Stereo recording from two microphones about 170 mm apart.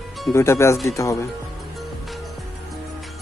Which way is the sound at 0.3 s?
15° left (ahead or behind).